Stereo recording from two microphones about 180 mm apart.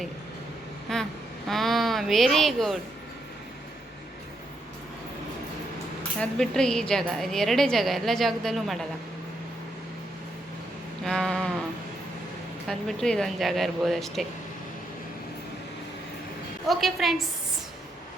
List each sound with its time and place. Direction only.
0.9 s a woman's voice: 5° left (ahead or behind)
6.1 s a woman's voice: 5° left (ahead or behind)
11.0 s sheep: 5° left (ahead or behind)
12.6 s a woman's voice: 5° left (ahead or behind)
16.6 s a woman's voice: centre (ahead or behind)